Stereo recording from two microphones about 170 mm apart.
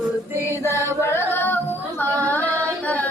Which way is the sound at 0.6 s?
15° left (ahead or behind).